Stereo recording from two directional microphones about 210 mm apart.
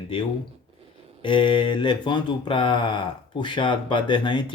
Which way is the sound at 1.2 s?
25° left (ahead or behind).